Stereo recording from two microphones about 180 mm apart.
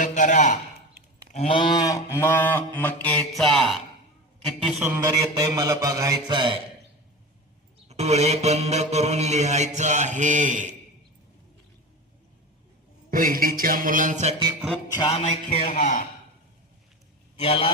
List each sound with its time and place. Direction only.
0.0 s a sound: 45° left (ahead or behind); by 3.8 s centre (ahead or behind)
4.4 s a man's voice: centre (ahead or behind)
4.8 s mantra: 15° right (ahead or behind)
7.9 s mantra: 35° right (ahead or behind)
13.1 s a sound: 50° right (ahead or behind)
14.9 s music: 35° left (ahead or behind)
15.7 s a man's voice: 45° left (ahead or behind)
17.3 s a man's voice: 35° left (ahead or behind)